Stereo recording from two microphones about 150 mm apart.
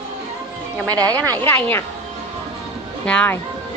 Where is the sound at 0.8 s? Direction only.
25° right (ahead or behind).